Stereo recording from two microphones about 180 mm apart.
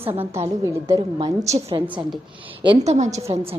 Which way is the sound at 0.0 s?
35° right (ahead or behind).